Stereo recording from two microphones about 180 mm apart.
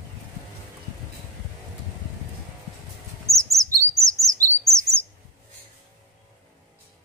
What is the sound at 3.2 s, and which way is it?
Chirp, 15° right (ahead or behind).